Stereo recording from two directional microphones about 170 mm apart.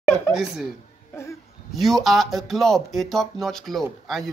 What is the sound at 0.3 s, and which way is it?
Speech, centre (ahead or behind).